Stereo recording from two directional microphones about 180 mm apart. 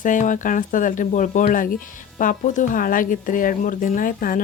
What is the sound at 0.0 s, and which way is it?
Speech, 45° left (ahead or behind).